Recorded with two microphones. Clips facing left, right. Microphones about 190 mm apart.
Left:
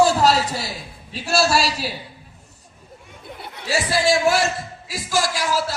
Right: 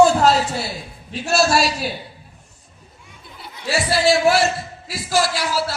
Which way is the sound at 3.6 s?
45° left (ahead or behind).